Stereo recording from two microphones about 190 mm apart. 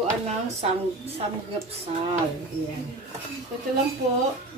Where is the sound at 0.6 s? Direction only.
30° right (ahead or behind).